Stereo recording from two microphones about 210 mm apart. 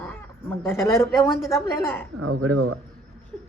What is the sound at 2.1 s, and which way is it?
Speech, 85° right.